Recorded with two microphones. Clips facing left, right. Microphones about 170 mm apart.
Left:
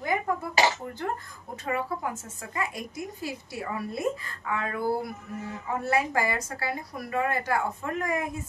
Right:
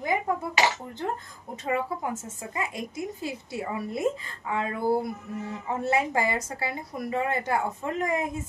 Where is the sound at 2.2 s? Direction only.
20° right (ahead or behind).